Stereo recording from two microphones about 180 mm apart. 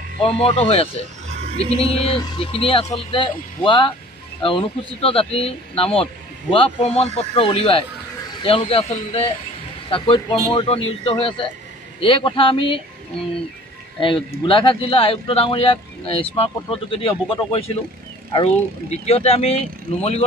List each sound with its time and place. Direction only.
0.2 s a man's voice: 30° left (ahead or behind)
13.9 s a man's voice: 25° left (ahead or behind)